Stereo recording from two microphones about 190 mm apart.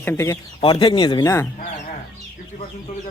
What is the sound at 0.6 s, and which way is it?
Speech, 25° left (ahead or behind).